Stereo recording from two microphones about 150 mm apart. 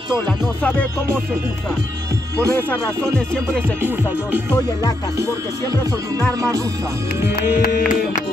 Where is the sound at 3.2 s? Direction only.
5° left (ahead or behind).